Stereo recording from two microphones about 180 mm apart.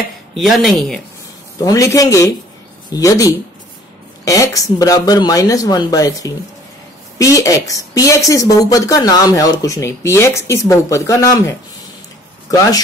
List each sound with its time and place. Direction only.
0.3 s speech: centre (ahead or behind)
1.6 s a man's voice: 20° left (ahead or behind)